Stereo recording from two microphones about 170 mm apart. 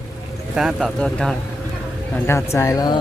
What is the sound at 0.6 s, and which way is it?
Speech, centre (ahead or behind).